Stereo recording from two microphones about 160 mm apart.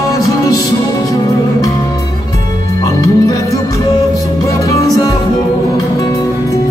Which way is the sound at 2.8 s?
20° left (ahead or behind).